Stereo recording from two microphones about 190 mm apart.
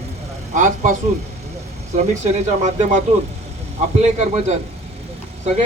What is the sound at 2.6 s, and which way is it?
A man's voice, 40° right (ahead or behind).